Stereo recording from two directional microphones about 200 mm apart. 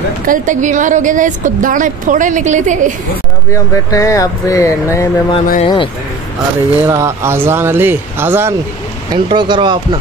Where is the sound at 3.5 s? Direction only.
15° left (ahead or behind).